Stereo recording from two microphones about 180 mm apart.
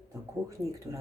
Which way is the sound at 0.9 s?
15° right (ahead or behind).